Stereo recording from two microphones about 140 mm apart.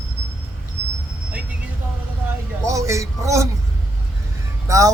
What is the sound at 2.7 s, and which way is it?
Speech, 20° right (ahead or behind).